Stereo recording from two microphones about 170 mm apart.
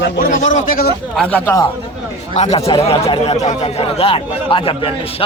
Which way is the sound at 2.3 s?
40° left (ahead or behind).